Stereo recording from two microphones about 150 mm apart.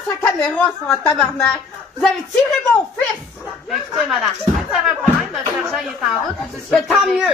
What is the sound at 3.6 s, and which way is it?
Speech, centre (ahead or behind).